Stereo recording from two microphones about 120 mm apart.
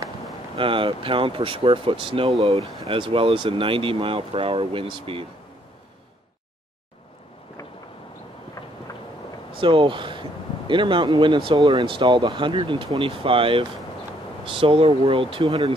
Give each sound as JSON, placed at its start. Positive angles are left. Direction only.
{"t": 0.6, "sound": "speech", "side_deg": -45}
{"t": 9.6, "sound": "speech", "side_deg": -45}
{"t": 11.8, "sound": "speech", "side_deg": -45}
{"t": 15.4, "sound": "speech", "side_deg": -30}